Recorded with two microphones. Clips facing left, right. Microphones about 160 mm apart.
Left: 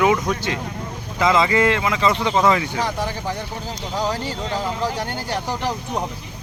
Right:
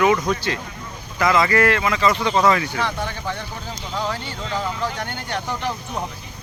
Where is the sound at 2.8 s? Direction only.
35° left (ahead or behind).